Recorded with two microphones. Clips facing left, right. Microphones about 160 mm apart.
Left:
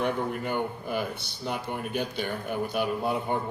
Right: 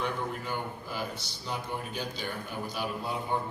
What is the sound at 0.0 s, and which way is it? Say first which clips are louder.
A man's voice: left 5 dB; 60° left (ahead or behind).